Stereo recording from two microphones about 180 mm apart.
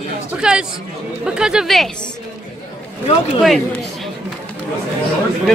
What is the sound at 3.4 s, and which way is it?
Speech, centre (ahead or behind).